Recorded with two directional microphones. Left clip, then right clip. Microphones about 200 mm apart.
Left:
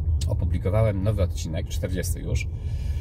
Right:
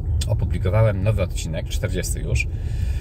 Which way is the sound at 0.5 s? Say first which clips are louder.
Right 3 dB; 15° left (ahead or behind).